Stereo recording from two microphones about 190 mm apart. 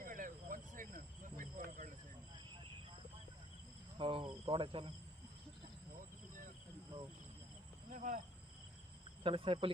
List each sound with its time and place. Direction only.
0.0 s cricket: 45° right (ahead or behind)
3.9 s cricket: 25° right (ahead or behind)
4.4 s speech: 25° right (ahead or behind)
7.9 s speech: 40° right (ahead or behind)
9.2 s speech: 30° right (ahead or behind)